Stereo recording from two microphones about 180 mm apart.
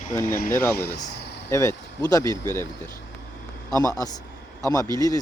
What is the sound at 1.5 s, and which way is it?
Speech, 15° left (ahead or behind).